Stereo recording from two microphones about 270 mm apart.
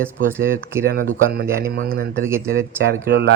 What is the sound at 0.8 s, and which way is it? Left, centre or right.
Speech, right.